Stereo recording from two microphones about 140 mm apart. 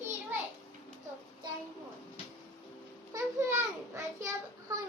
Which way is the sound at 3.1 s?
20° right (ahead or behind).